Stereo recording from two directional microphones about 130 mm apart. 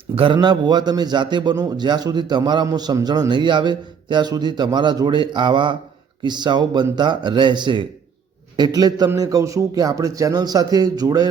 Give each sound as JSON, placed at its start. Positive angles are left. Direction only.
{"t": 0.3, "sound": "a man's voice", "side_deg": -35}